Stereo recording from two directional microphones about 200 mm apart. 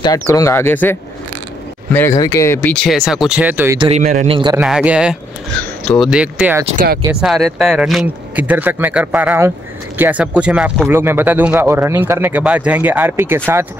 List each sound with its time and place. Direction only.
0.0 s speech: 15° left (ahead or behind); by 3.7 s 10° right (ahead or behind)
3.8 s speech: 35° right (ahead or behind)
4.6 s speech: 5° right (ahead or behind)